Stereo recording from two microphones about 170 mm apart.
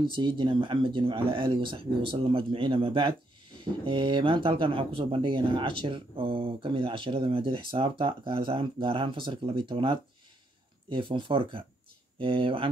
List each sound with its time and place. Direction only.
0.0 s speech: 30° right (ahead or behind)